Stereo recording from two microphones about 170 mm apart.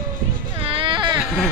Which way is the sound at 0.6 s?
30° right (ahead or behind).